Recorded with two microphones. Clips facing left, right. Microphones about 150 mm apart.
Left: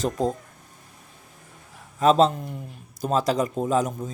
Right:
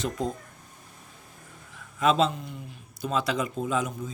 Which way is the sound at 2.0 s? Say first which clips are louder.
Left 5 dB; 40° left (ahead or behind).